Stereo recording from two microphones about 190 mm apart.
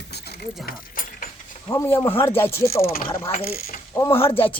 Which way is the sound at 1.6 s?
10° left (ahead or behind).